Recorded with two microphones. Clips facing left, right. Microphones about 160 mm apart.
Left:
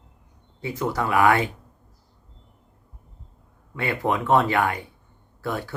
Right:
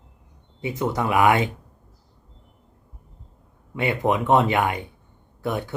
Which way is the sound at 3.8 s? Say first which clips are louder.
Right 3 dB; 20° right (ahead or behind).